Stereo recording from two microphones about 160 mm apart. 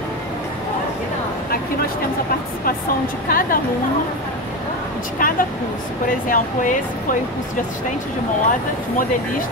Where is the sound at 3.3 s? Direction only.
60° left (ahead or behind).